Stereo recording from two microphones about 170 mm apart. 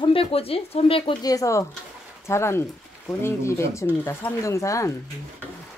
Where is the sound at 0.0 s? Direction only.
35° left (ahead or behind).